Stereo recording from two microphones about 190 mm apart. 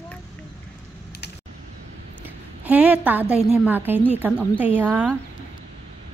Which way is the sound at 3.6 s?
10° right (ahead or behind).